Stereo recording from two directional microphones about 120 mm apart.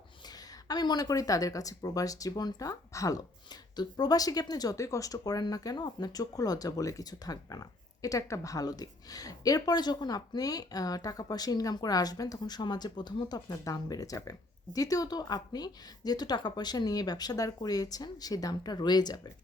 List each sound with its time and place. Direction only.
0.3 s speech: 35° left (ahead or behind)